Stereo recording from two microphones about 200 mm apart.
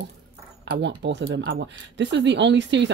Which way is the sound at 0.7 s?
60° right (ahead or behind).